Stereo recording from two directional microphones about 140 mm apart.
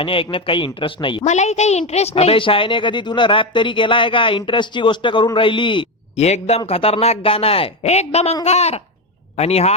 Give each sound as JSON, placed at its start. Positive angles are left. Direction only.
{"t": 0.0, "sound": "speech", "side_deg": 40}
{"t": 1.2, "sound": "speech", "side_deg": 55}
{"t": 6.1, "sound": "a man's voice", "side_deg": 50}